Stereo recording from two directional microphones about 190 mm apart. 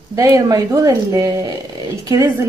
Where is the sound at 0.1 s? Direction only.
15° right (ahead or behind).